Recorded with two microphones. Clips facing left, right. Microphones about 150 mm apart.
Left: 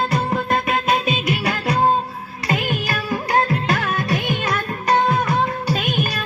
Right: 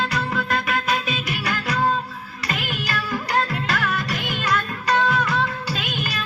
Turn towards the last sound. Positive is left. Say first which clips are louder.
# left 5 dB
turn(degrees=50)  # may be behind; listen again after turning